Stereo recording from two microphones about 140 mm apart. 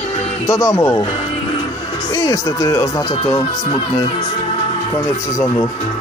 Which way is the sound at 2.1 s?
25° left (ahead or behind).